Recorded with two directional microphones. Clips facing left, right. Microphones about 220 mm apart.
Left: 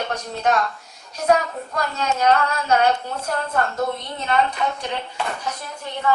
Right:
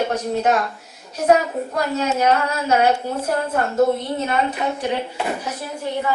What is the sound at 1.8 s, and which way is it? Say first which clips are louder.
A man's voice: right 2 dB; 10° right (ahead or behind).